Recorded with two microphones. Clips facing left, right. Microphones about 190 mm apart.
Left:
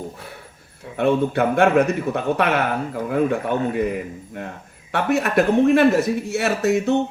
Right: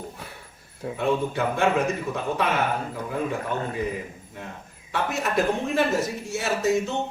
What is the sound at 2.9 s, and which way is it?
Speech, 65° left (ahead or behind).